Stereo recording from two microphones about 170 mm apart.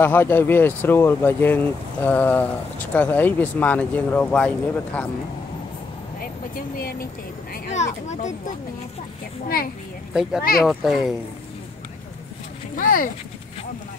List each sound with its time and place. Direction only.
0.0 s speech: 10° left (ahead or behind)
6.8 s speech: 60° left (ahead or behind)
7.7 s a child's voice: 45° left (ahead or behind)
10.6 s speech: centre (ahead or behind)
12.7 s speech: 55° left (ahead or behind)